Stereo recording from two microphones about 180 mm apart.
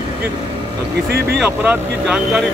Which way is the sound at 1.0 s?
60° right (ahead or behind).